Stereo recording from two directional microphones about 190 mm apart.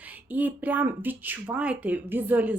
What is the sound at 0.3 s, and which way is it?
Speech, 10° right (ahead or behind).